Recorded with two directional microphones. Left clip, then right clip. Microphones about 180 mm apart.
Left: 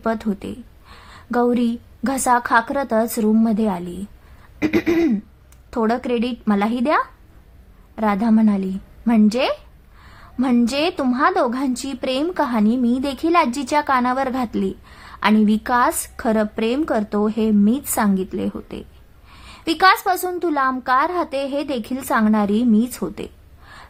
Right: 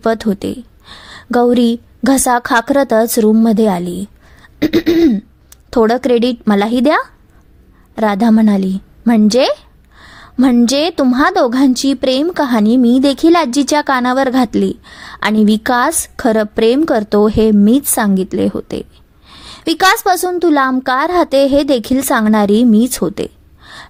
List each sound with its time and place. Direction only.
0.0 s a woman's voice: 35° right (ahead or behind)
4.6 s throat clearing: 30° right (ahead or behind)
5.7 s a woman's voice: 35° right (ahead or behind)